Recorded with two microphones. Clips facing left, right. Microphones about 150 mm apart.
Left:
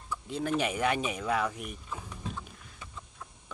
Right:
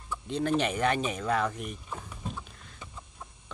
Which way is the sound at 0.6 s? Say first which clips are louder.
Left 1 dB; 10° left (ahead or behind).